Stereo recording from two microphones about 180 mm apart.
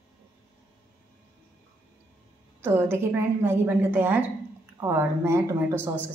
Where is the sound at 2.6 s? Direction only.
15° right (ahead or behind).